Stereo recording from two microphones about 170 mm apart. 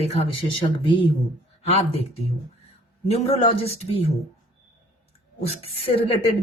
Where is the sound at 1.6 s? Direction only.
40° left (ahead or behind).